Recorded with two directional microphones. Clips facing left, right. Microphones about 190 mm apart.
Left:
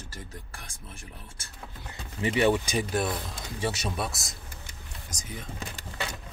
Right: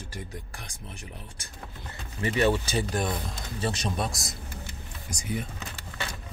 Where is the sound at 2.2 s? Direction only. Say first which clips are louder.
Left 1 dB; 15° left (ahead or behind).